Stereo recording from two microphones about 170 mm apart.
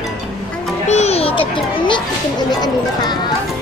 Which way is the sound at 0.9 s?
40° left (ahead or behind).